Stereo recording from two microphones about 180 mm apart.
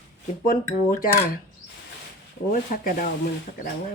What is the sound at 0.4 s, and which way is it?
Speech, 50° left (ahead or behind).